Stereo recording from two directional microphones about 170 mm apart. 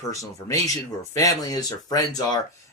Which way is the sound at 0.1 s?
20° left (ahead or behind).